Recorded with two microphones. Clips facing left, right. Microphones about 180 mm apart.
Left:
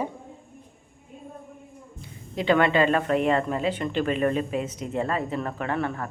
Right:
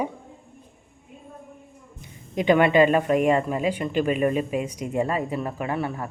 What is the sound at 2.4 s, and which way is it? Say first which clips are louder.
Speech: right 3 dB; 15° right (ahead or behind).